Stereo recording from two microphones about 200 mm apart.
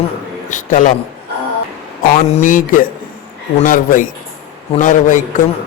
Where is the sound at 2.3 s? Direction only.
40° left (ahead or behind).